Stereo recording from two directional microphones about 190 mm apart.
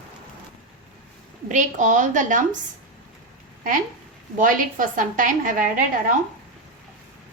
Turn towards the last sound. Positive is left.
turn(degrees=-45)  # may be behind; listen again after turning